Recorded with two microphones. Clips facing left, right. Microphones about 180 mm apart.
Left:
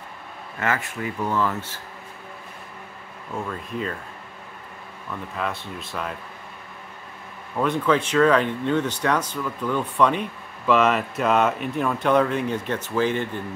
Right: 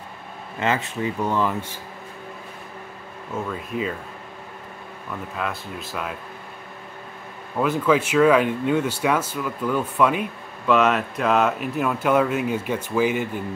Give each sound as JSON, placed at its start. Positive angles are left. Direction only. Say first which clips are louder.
{"t": 0.6, "sound": "speech", "louder": "right 3 dB", "side_deg": -20}
{"t": 3.4, "sound": "speech", "louder": "right 3 dB", "side_deg": -5}
{"t": 5.3, "sound": "speech", "louder": "left 1 dB", "side_deg": 0}
{"t": 7.5, "sound": "speech", "louder": "right 1 dB", "side_deg": -5}